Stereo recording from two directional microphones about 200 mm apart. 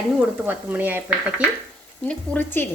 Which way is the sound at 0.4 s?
10° right (ahead or behind).